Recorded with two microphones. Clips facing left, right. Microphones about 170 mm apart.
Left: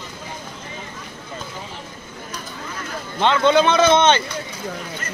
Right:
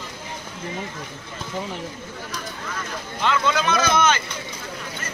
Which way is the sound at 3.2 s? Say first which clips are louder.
Left 7 dB; 30° left (ahead or behind).